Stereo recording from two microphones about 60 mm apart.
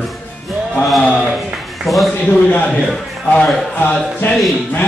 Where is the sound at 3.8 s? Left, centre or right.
Left.